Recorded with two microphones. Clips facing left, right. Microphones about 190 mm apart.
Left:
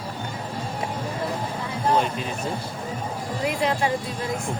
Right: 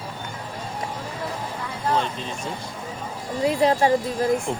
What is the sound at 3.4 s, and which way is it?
Speech, 35° right (ahead or behind).